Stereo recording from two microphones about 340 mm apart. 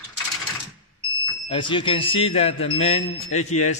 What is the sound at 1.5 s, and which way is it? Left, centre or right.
A man's voice, centre.